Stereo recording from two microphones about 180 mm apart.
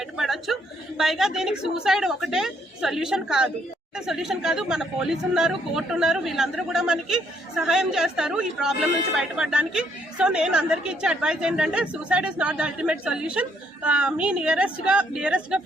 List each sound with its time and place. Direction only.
0.2 s a woman's voice: centre (ahead or behind)